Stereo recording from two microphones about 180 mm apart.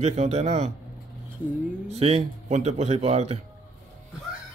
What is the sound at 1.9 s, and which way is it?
A man's voice, 35° right (ahead or behind).